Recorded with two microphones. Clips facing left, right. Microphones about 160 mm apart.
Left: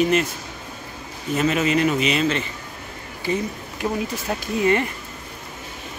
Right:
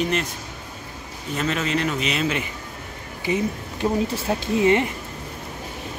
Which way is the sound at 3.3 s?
20° right (ahead or behind).